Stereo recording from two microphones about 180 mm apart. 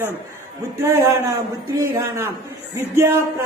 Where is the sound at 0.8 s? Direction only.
15° right (ahead or behind).